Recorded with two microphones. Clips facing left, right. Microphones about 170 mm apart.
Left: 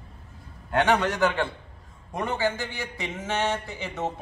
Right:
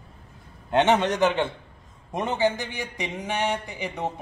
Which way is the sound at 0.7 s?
20° right (ahead or behind).